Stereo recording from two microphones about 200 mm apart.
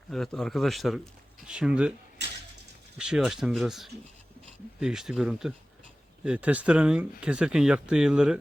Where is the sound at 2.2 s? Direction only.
60° right (ahead or behind).